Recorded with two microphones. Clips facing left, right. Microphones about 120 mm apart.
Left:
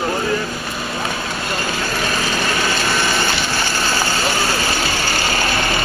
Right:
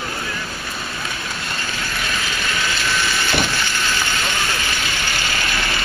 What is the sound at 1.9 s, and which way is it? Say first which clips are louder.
Vehicle: left 5 dB; 40° left (ahead or behind).